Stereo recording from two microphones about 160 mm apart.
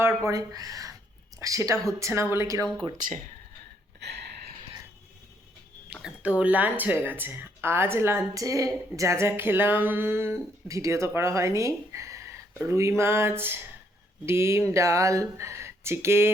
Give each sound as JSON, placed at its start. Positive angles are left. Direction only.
{"t": 0.0, "sound": "speech", "side_deg": -20}
{"t": 4.0, "sound": "a sound", "side_deg": -90}
{"t": 5.9, "sound": "speech", "side_deg": -5}